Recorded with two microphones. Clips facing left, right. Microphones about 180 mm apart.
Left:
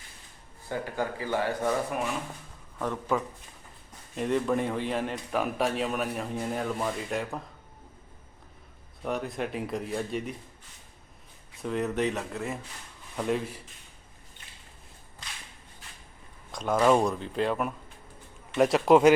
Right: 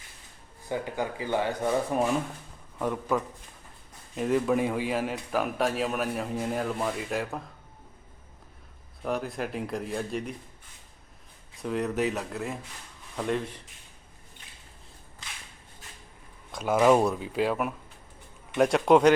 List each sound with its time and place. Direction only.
0.7 s speech: 15° right (ahead or behind)
2.7 s speech: 10° right (ahead or behind)
9.0 s speech: centre (ahead or behind)
11.6 s speech: centre (ahead or behind)
16.5 s speech: 5° right (ahead or behind)